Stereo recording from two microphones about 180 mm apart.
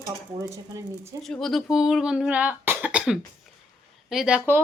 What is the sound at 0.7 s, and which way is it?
Speech, 15° right (ahead or behind).